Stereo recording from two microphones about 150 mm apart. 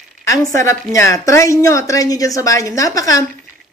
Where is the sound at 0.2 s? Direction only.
20° left (ahead or behind).